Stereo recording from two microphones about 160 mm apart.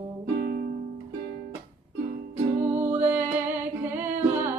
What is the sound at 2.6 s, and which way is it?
Music, 10° right (ahead or behind).